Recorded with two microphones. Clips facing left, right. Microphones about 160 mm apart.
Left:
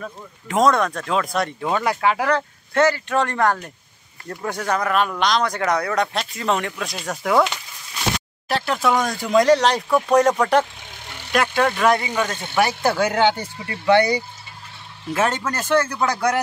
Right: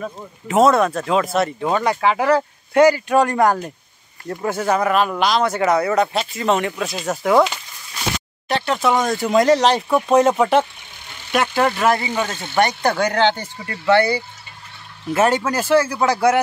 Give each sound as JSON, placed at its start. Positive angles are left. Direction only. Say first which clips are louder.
{"t": 0.5, "sound": "speech", "louder": "right 3 dB", "side_deg": -5}
{"t": 9.8, "sound": "speech", "louder": "even", "side_deg": -20}
{"t": 11.3, "sound": "speech", "louder": "right 1 dB", "side_deg": -5}
{"t": 15.0, "sound": "speech", "louder": "right 4 dB", "side_deg": -5}